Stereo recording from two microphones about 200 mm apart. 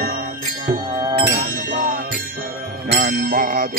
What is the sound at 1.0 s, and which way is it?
Music, 20° right (ahead or behind).